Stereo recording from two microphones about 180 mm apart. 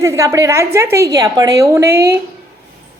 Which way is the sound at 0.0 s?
15° right (ahead or behind).